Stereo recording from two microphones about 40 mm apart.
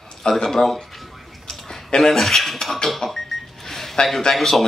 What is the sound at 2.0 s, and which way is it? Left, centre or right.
Speech, centre.